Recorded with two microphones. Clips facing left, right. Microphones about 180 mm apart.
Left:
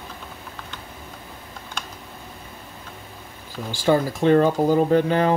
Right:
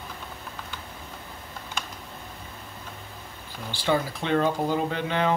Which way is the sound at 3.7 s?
45° left (ahead or behind).